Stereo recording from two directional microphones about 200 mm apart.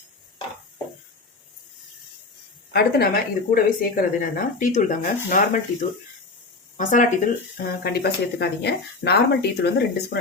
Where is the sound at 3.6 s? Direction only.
45° left (ahead or behind).